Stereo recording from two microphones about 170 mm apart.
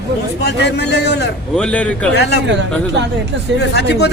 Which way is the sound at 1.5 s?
5° left (ahead or behind).